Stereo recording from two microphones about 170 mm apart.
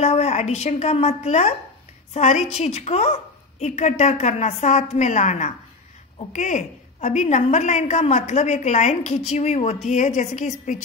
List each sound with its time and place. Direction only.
0.0 s a woman's voice: 40° left (ahead or behind)